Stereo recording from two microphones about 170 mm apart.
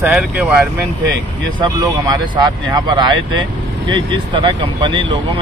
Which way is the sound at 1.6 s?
25° right (ahead or behind).